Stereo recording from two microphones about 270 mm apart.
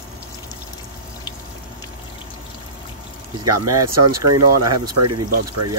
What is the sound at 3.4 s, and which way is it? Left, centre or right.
Speech, right.